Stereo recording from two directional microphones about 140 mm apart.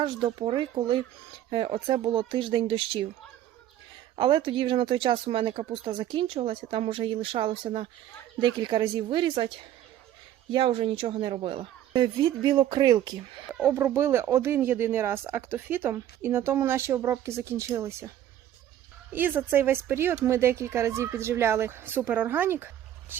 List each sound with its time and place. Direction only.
0.0 s speech: 35° right (ahead or behind)
4.1 s speech: 40° right (ahead or behind)
10.5 s speech: 40° right (ahead or behind)
13.5 s speech: 10° right (ahead or behind)
19.1 s speech: 15° right (ahead or behind)